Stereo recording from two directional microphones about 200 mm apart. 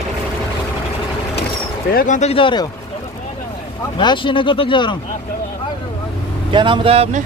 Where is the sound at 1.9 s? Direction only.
40° left (ahead or behind); by 2.6 s 25° left (ahead or behind).